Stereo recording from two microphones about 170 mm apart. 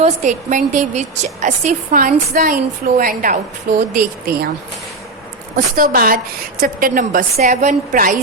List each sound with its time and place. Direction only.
0.0 s a woman's voice: 45° right (ahead or behind); by 4.4 s 60° right (ahead or behind)
5.5 s a woman's voice: 55° right (ahead or behind)
7.3 s a woman's voice: 45° right (ahead or behind)